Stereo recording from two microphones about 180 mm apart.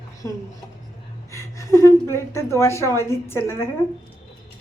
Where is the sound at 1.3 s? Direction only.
15° left (ahead or behind).